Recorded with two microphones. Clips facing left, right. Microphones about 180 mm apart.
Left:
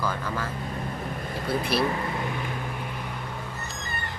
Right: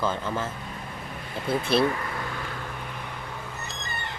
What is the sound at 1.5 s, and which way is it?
Speech, 25° right (ahead or behind).